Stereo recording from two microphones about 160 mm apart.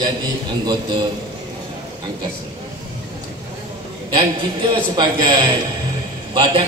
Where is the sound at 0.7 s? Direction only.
30° right (ahead or behind).